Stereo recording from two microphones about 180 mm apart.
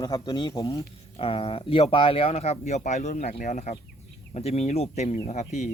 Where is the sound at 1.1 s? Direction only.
30° left (ahead or behind).